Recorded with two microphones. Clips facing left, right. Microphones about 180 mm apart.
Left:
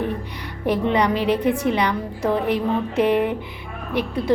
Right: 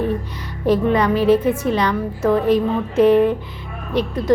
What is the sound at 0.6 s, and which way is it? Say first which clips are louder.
A woman's voice: right 3 dB; 15° left (ahead or behind).